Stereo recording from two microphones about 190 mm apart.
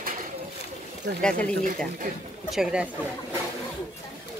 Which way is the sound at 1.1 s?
55° right (ahead or behind).